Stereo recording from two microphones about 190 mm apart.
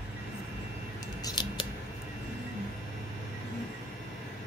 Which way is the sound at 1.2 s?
20° left (ahead or behind).